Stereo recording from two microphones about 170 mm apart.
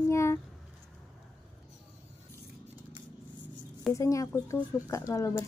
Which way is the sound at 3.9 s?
20° left (ahead or behind).